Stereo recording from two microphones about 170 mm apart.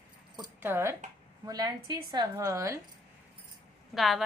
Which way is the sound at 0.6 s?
15° right (ahead or behind).